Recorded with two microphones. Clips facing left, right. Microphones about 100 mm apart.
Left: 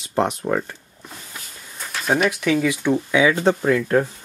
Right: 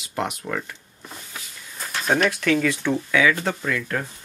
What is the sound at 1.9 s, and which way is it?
Speech, centre (ahead or behind).